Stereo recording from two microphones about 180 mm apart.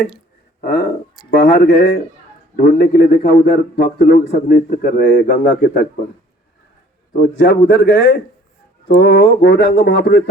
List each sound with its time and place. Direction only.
0.6 s a man's voice: 65° left (ahead or behind)
5.2 s a man's voice: 50° left (ahead or behind)
7.2 s speech: 65° left (ahead or behind)